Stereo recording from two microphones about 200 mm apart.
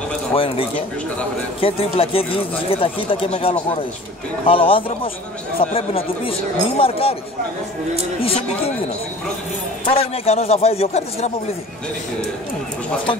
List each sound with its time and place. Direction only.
0.3 s speech: 25° left (ahead or behind)
8.2 s speech: 30° left (ahead or behind)
9.8 s a man's voice: 30° left (ahead or behind)